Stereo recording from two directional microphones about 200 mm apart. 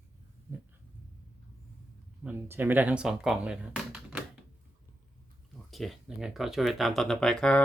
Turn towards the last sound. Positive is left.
turn(degrees=5)  # may be behind; listen again after turning